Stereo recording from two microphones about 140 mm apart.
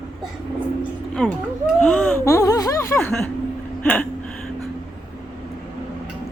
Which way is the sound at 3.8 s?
10° left (ahead or behind).